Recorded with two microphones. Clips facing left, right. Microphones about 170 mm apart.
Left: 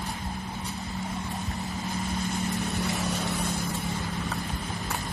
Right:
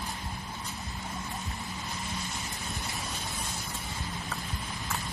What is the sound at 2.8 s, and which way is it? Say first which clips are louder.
Vehicle: left 9 dB; 75° left (ahead or behind).